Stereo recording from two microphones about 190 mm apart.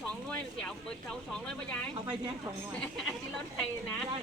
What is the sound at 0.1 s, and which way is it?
Speech, 5° left (ahead or behind).